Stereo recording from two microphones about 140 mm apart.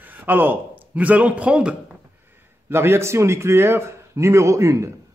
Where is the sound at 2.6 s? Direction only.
15° right (ahead or behind).